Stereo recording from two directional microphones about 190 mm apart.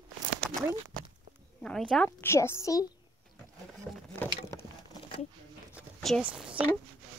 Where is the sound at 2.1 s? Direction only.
15° left (ahead or behind).